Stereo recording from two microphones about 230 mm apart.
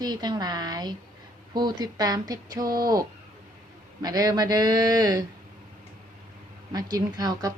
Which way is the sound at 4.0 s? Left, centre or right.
Centre.